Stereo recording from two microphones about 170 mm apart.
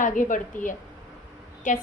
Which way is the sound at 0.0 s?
50° left (ahead or behind).